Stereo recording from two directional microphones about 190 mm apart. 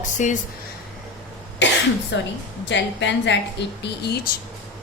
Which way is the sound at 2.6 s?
70° left (ahead or behind).